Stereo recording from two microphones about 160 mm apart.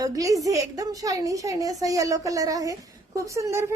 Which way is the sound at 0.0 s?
20° right (ahead or behind).